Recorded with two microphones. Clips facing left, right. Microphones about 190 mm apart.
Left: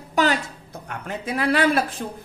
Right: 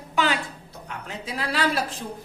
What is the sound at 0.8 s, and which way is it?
Speech, 55° left (ahead or behind).